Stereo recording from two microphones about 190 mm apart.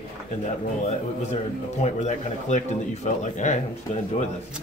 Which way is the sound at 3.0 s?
40° left (ahead or behind).